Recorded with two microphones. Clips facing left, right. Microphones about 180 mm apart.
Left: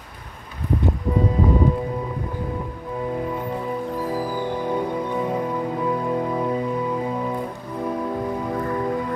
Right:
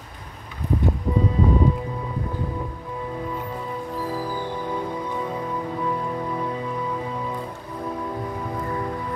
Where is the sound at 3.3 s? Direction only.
15° left (ahead or behind).